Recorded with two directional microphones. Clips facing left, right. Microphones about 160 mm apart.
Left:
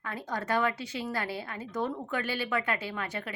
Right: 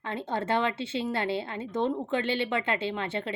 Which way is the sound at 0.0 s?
25° right (ahead or behind).